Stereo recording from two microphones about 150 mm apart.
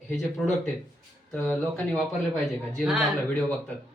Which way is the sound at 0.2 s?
Centre (ahead or behind).